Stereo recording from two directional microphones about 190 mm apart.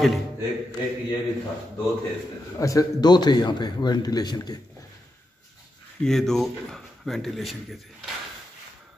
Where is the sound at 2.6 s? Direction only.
15° left (ahead or behind).